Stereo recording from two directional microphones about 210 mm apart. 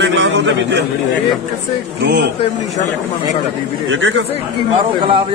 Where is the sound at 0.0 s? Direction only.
55° right (ahead or behind).